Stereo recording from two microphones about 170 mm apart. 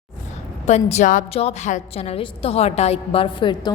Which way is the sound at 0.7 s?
40° left (ahead or behind).